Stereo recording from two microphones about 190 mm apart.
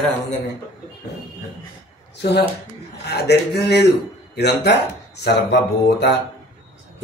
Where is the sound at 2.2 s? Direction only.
60° left (ahead or behind).